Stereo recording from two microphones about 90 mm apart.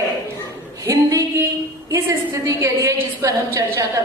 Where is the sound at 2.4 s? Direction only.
35° right (ahead or behind).